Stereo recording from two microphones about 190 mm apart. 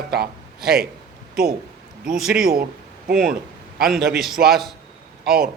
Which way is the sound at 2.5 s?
50° right (ahead or behind).